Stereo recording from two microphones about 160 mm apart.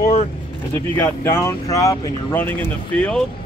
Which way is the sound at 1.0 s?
15° left (ahead or behind).